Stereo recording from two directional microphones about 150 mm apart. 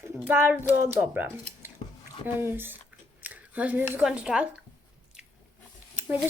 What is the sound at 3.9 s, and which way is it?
Speech, 5° right (ahead or behind).